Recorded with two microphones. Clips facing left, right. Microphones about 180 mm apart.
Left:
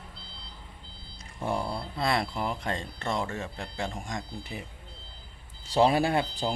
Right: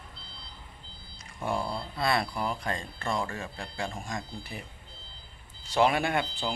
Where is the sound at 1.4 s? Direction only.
20° left (ahead or behind).